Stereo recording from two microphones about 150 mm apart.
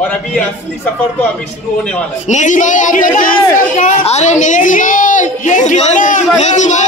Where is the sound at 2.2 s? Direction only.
55° left (ahead or behind).